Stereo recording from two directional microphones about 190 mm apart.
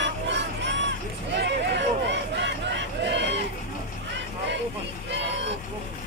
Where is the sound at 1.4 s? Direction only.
65° right (ahead or behind).